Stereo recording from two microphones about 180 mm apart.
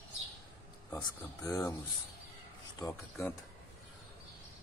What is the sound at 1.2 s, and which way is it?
Speech, 20° left (ahead or behind).